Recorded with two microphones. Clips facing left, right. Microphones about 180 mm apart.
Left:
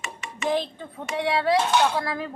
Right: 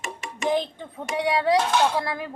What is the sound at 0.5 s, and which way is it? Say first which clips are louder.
Speech: even; 15° right (ahead or behind).